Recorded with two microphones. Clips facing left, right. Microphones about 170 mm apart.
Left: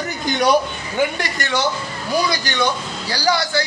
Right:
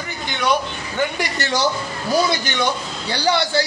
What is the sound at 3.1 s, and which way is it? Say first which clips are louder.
Speech: right 1 dB; 25° right (ahead or behind).